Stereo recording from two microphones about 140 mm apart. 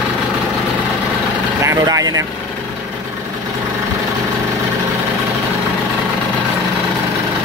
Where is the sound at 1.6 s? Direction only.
25° right (ahead or behind).